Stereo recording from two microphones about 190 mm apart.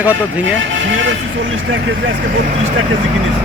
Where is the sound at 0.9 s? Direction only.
90° right.